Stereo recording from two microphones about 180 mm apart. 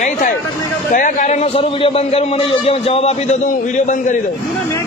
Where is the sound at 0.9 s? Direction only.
45° left (ahead or behind).